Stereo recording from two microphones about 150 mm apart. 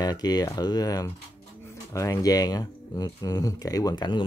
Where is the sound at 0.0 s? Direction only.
25° left (ahead or behind).